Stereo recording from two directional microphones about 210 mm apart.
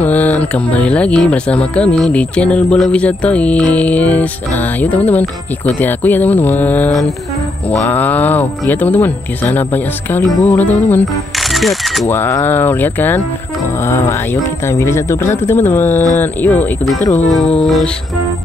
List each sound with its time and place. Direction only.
0.0 s speech: 5° left (ahead or behind)
17.0 s speech: 35° left (ahead or behind)
17.3 s speech: centre (ahead or behind)